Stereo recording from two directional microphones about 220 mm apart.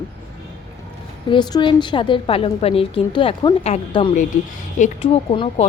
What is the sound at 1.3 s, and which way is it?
A woman's voice, 20° left (ahead or behind).